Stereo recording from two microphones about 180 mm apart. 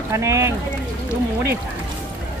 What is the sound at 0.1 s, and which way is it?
Speech, 15° right (ahead or behind).